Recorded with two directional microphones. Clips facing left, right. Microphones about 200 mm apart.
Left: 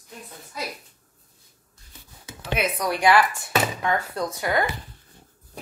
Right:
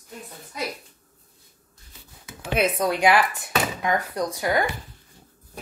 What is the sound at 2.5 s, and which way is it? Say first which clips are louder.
Speech: right 3 dB; 25° right (ahead or behind).